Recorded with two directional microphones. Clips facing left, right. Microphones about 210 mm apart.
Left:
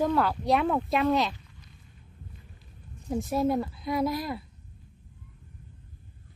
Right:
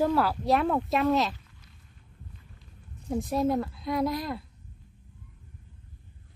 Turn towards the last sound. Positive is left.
turn(degrees=0)  # may be behind; listen again after turning